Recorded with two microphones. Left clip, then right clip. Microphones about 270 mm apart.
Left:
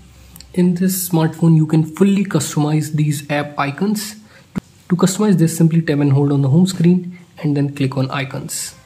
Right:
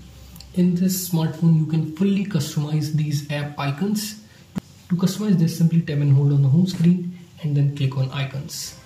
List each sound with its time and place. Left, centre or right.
0.6 s speech: centre
4.6 s a sound: centre
5.0 s speech: centre